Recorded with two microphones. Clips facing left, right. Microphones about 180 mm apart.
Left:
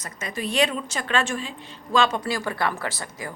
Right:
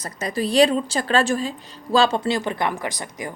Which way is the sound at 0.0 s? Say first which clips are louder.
Right 6 dB; 35° right (ahead or behind).